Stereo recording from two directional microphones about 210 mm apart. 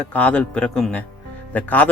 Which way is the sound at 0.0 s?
5° left (ahead or behind).